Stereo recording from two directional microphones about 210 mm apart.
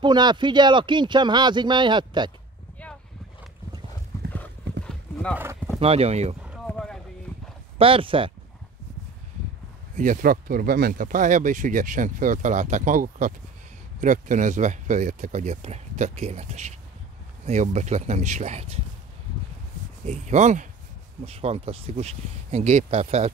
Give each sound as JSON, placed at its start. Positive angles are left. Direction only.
{"t": 0.0, "sound": "speech", "side_deg": -20}
{"t": 4.8, "sound": "clip-clop", "side_deg": 5}
{"t": 5.3, "sound": "speech", "side_deg": -10}
{"t": 5.8, "sound": "speech", "side_deg": -30}
{"t": 6.4, "sound": "clip-clop", "side_deg": -5}
{"t": 7.8, "sound": "speech", "side_deg": -25}
{"t": 9.9, "sound": "speech", "side_deg": -40}
{"t": 20.1, "sound": "speech", "side_deg": -35}